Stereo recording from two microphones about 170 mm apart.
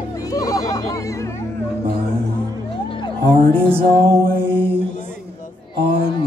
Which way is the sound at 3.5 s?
30° right (ahead or behind).